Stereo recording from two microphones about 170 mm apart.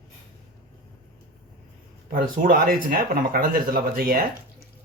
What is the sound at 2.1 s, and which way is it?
Speech, 55° right (ahead or behind).